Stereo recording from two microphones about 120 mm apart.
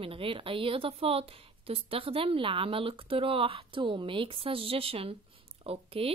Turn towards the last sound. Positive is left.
turn(degrees=-55)  # may be behind; listen again after turning